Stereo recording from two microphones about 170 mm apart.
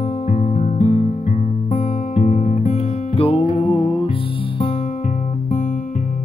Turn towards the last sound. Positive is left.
turn(degrees=45)  # may be behind; listen again after turning